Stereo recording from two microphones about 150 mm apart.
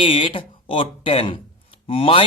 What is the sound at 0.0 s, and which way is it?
Speech, 35° left (ahead or behind).